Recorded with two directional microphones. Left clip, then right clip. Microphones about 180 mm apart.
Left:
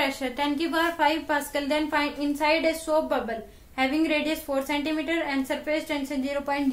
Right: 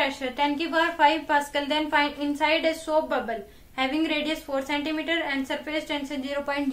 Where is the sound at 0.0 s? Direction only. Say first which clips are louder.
Right 1 dB; 10° left (ahead or behind).